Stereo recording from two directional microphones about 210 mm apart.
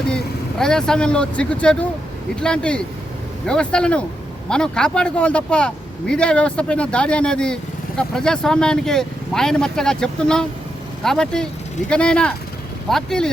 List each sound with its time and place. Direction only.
0.6 s speech: 5° left (ahead or behind)